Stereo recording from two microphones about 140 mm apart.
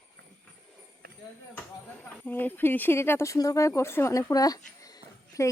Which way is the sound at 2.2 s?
15° left (ahead or behind).